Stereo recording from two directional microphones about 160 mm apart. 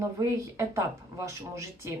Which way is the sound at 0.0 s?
20° right (ahead or behind).